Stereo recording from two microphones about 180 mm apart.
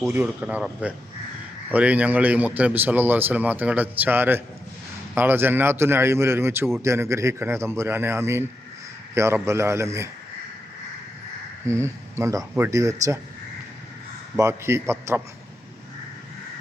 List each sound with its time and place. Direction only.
0.1 s a man's voice: 10° right (ahead or behind)
11.7 s a man's voice: 15° right (ahead or behind)
14.3 s a man's voice: 15° right (ahead or behind)